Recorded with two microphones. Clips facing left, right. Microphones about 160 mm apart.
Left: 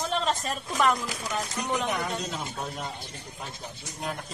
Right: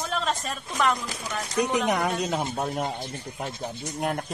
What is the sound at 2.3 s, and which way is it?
Speech, 60° right (ahead or behind).